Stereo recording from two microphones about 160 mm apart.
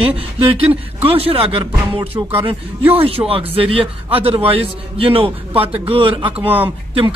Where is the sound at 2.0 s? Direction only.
20° right (ahead or behind).